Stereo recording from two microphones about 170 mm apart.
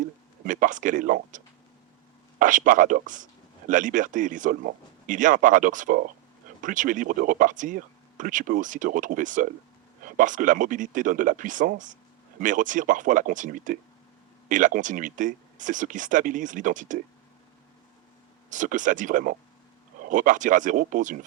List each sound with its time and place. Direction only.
0.4 s speech: 50° right (ahead or behind)
2.4 s speech: 50° right (ahead or behind)
18.5 s speech: 50° right (ahead or behind)